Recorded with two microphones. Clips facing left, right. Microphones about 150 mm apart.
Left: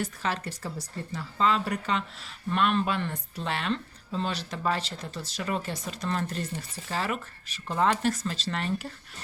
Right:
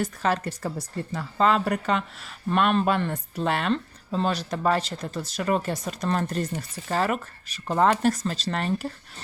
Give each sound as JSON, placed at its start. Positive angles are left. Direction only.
{"t": 0.0, "sound": "speech", "side_deg": -45}